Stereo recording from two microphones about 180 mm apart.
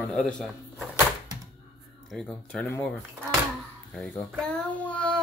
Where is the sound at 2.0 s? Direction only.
5° left (ahead or behind).